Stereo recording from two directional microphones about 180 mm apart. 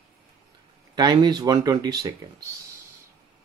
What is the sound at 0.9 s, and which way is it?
Speech, 25° right (ahead or behind).